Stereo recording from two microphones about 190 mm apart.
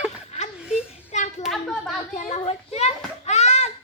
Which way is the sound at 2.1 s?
35° left (ahead or behind).